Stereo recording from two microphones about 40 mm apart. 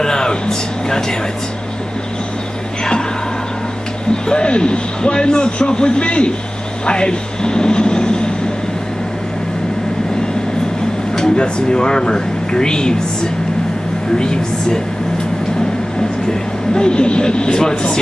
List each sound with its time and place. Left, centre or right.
0.0 s speech: centre
4.1 s a man's voice: left
6.9 s a sound: left
11.1 s a man's voice: centre
16.7 s a man's voice: left